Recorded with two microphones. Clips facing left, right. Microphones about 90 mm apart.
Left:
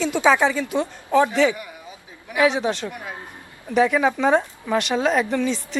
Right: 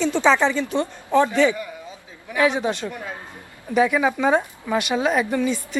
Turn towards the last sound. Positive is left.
turn(degrees=-5)  # may be behind; listen again after turning